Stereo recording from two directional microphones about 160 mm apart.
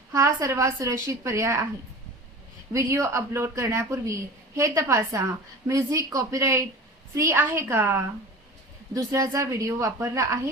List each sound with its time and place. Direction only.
0.1 s a woman's voice: 20° right (ahead or behind)
2.7 s a woman's voice: 20° right (ahead or behind)